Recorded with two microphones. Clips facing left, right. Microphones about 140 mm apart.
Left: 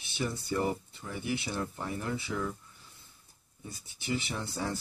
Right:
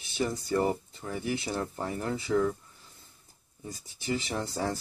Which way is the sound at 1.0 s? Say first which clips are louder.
Right 2 dB; 40° right (ahead or behind).